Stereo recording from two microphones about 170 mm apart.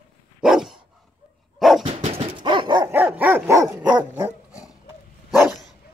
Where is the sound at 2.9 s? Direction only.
10° right (ahead or behind).